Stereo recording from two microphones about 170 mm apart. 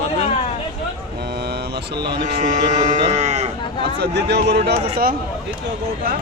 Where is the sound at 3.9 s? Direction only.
80° right.